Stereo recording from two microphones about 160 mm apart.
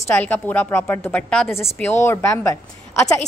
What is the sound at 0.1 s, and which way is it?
A woman's voice, 10° left (ahead or behind).